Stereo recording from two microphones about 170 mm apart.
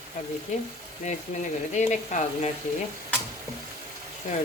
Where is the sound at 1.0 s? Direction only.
45° left (ahead or behind).